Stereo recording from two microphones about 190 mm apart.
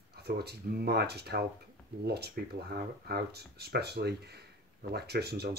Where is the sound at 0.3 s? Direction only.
60° right (ahead or behind).